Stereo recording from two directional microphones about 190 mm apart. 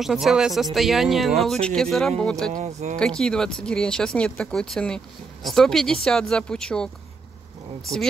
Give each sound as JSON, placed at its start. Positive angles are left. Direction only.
{"t": 0.0, "sound": "speech", "side_deg": 0}
{"t": 2.5, "sound": "speech", "side_deg": -35}
{"t": 3.0, "sound": "speech", "side_deg": 5}